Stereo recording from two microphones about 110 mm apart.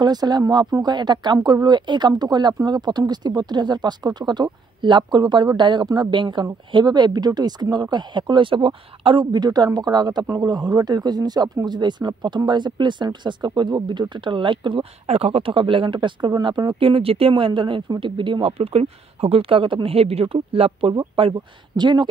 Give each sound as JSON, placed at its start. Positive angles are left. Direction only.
{"t": 0.0, "sound": "speech", "side_deg": -40}
{"t": 15.0, "sound": "speech", "side_deg": -65}